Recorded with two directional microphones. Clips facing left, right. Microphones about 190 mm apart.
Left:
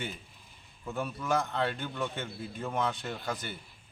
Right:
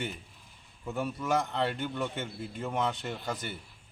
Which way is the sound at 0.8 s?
15° right (ahead or behind).